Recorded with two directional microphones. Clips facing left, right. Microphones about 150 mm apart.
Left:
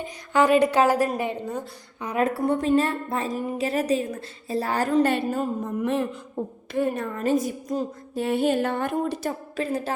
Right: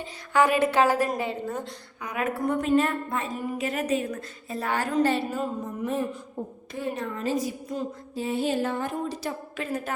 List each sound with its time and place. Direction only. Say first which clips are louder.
0.5 s a woman's voice: left 3 dB; 15° left (ahead or behind)
2.0 s a woman's voice: left 5 dB; 30° left (ahead or behind)
5.0 s a sound: left 2 dB; 55° left (ahead or behind)
6.7 s a woman's voice: left 6 dB; 55° left (ahead or behind)
8.1 s a sound: left 4 dB; 60° left (ahead or behind)
9.6 s a woman's voice: left 5 dB; 35° left (ahead or behind)